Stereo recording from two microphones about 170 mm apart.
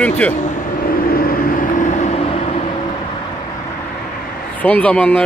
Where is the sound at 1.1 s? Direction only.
60° left (ahead or behind).